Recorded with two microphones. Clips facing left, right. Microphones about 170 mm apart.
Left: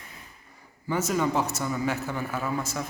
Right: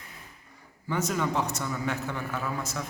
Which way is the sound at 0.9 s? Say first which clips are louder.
Left 3 dB; 5° left (ahead or behind).